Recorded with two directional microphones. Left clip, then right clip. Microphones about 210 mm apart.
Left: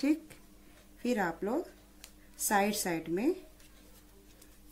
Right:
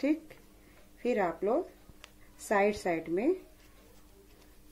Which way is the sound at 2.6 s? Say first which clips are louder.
Right 4 dB; 50° left (ahead or behind).